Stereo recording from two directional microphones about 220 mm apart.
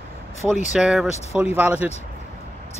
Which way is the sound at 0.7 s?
Centre (ahead or behind).